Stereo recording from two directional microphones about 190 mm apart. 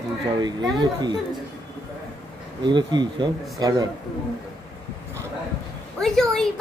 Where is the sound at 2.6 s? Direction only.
25° right (ahead or behind).